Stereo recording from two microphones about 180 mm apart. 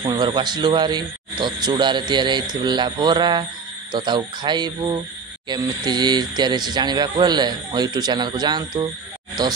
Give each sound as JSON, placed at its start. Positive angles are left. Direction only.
{"t": 0.0, "sound": "speech", "side_deg": -25}